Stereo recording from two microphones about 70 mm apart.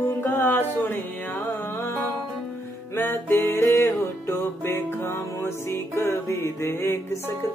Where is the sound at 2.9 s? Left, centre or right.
Left.